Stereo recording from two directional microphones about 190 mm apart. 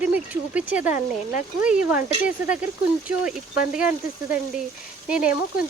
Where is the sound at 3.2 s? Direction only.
5° right (ahead or behind).